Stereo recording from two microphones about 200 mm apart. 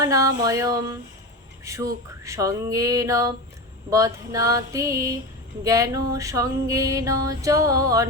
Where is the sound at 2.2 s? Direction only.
15° right (ahead or behind).